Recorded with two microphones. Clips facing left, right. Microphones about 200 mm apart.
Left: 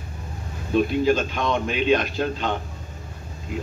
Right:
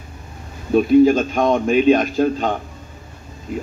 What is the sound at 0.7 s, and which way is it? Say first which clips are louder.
A man's voice: right 8 dB; 45° right (ahead or behind).